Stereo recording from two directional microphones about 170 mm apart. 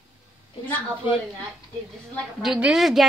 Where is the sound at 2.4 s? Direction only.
5° right (ahead or behind).